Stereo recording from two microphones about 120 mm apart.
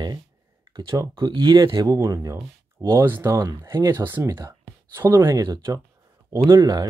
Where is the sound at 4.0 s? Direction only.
20° right (ahead or behind).